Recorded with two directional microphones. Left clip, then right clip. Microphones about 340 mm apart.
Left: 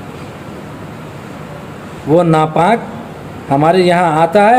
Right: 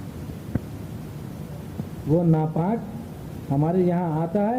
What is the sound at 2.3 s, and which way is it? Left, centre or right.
Speech, centre.